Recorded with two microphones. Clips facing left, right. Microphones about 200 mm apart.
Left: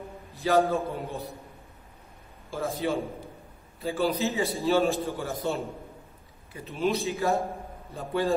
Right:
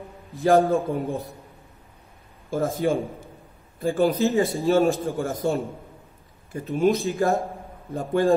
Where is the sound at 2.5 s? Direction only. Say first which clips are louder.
Right 7 dB; 50° right (ahead or behind).